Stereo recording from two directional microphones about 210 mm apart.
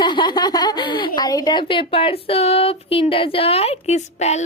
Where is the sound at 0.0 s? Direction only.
20° left (ahead or behind).